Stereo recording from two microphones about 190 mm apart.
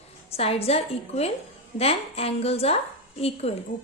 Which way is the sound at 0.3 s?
30° left (ahead or behind).